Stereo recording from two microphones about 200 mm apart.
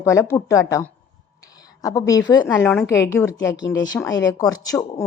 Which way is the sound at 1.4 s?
20° left (ahead or behind).